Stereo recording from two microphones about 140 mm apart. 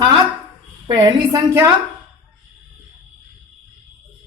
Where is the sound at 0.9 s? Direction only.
30° right (ahead or behind).